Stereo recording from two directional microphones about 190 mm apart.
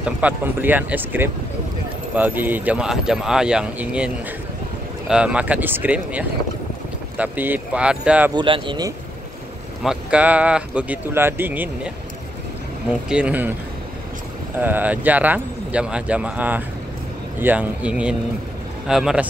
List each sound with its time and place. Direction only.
0.2 s speech: 10° right (ahead or behind)
8.4 s speech: 25° right (ahead or behind)
9.8 s speech: 5° right (ahead or behind)
13.1 s speech: 5° right (ahead or behind)
14.6 s speech: 10° right (ahead or behind)